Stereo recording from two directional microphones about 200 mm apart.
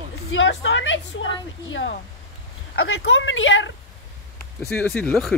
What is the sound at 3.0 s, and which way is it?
Speech, 70° left (ahead or behind).